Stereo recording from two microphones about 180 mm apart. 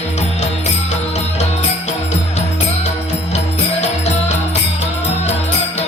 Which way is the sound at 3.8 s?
35° left (ahead or behind).